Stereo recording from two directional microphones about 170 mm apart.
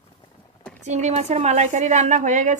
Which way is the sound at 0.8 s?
45° right (ahead or behind).